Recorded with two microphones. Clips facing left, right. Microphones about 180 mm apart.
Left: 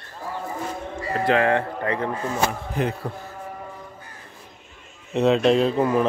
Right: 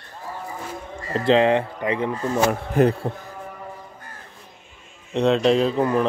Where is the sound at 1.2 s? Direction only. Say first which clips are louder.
Right 3 dB; 25° right (ahead or behind).